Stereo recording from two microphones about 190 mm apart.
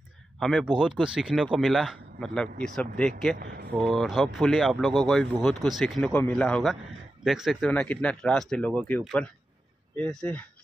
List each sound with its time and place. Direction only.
0.4 s speech: centre (ahead or behind)
3.3 s speech: 50° right (ahead or behind)
3.7 s speech: centre (ahead or behind)